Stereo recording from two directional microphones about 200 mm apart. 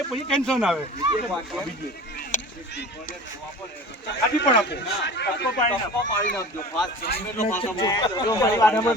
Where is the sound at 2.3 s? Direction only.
40° left (ahead or behind).